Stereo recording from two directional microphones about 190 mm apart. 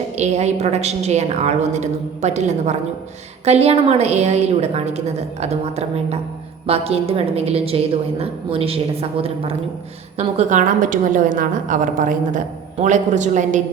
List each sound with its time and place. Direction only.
0.2 s a woman's voice: 35° right (ahead or behind)